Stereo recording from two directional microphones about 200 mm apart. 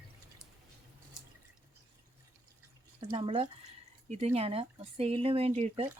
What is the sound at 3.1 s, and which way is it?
Speech, 25° right (ahead or behind).